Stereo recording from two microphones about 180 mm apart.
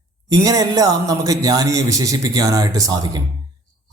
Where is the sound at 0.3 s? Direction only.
20° right (ahead or behind).